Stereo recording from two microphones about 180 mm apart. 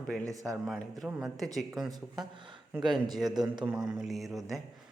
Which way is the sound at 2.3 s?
25° right (ahead or behind).